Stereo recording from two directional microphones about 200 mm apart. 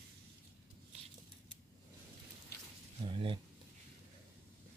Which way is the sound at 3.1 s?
25° right (ahead or behind).